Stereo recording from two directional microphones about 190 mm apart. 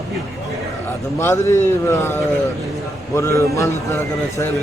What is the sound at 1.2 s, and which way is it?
Speech, 15° left (ahead or behind).